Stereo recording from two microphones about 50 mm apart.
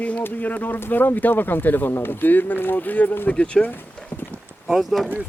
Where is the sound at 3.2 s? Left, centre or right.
Left.